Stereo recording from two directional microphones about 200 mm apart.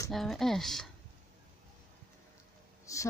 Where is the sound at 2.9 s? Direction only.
15° left (ahead or behind).